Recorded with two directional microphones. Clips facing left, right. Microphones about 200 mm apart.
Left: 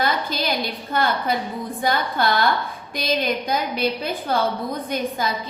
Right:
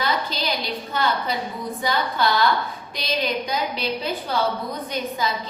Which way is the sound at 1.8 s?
55° left (ahead or behind).